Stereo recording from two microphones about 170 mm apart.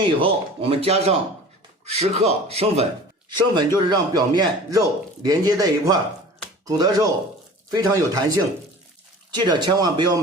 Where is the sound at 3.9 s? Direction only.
25° right (ahead or behind).